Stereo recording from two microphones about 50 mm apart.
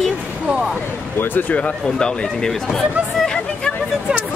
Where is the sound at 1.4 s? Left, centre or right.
Left.